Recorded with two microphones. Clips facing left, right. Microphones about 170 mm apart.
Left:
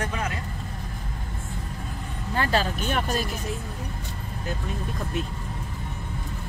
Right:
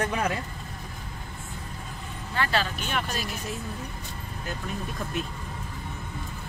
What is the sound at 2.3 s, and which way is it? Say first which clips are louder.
Speech: left 3 dB; 40° left (ahead or behind).